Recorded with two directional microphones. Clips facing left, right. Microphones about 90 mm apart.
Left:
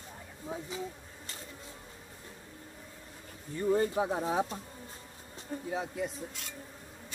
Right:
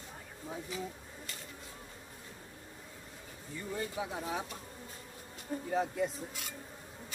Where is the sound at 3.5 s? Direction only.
45° left (ahead or behind).